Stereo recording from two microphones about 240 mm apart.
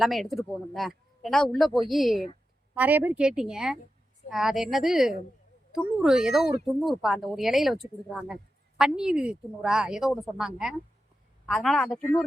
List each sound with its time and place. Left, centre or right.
0.0 s a woman's voice: centre